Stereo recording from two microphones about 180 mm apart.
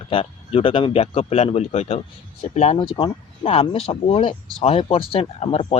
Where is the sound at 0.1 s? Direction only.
30° left (ahead or behind).